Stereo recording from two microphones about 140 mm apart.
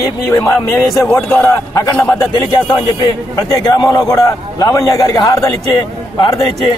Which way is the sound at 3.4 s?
30° left (ahead or behind).